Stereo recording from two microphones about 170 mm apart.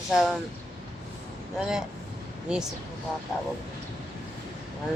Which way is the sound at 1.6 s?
5° right (ahead or behind).